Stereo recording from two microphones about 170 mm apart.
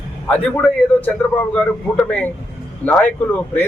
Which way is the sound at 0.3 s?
10° left (ahead or behind).